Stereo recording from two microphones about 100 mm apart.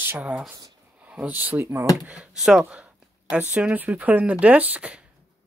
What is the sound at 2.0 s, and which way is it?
Speech, 10° right (ahead or behind).